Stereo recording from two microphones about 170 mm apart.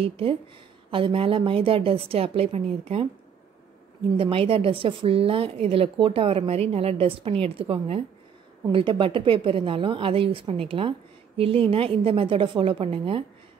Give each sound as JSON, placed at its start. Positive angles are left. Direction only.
{"t": 0.0, "sound": "a woman's voice", "side_deg": -35}
{"t": 4.2, "sound": "a woman's voice", "side_deg": -35}